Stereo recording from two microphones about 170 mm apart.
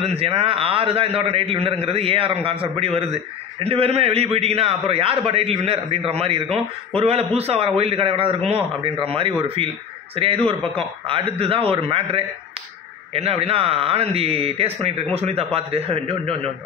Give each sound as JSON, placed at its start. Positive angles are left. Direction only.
{"t": 0.0, "sound": "a man's voice", "side_deg": -35}